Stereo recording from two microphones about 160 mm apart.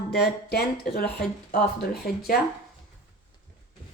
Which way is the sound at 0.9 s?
70° left (ahead or behind).